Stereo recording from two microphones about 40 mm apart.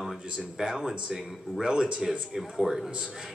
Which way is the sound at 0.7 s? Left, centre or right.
Centre.